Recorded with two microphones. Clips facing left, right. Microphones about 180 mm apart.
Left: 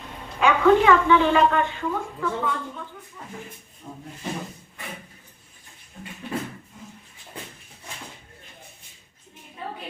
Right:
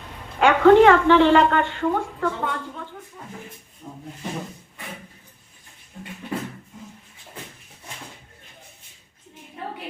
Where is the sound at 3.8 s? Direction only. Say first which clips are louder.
Right 1 dB; 15° right (ahead or behind).